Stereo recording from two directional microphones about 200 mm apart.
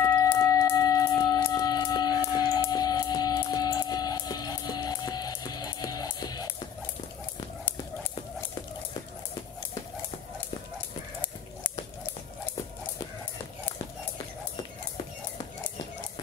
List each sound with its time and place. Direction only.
0.0 s music: 15° left (ahead or behind)